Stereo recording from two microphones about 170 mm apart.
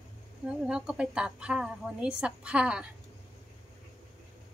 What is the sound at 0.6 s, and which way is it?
A woman's voice, 5° right (ahead or behind).